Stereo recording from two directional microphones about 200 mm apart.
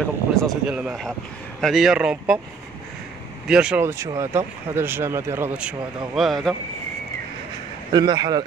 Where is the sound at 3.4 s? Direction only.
5° right (ahead or behind).